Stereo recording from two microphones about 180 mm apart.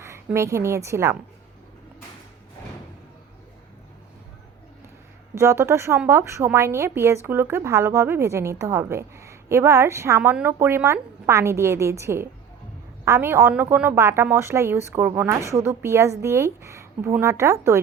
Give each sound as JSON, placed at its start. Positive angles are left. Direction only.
{"t": 0.0, "sound": "a woman's voice", "side_deg": -15}
{"t": 5.3, "sound": "a woman's voice", "side_deg": -15}